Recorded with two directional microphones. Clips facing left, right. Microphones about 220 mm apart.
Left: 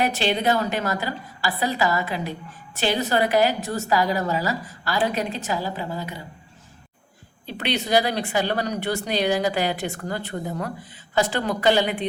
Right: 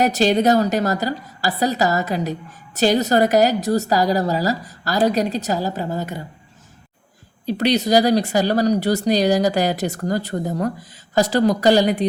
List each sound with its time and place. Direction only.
0.0 s speech: 40° right (ahead or behind)
7.4 s speech: 40° right (ahead or behind)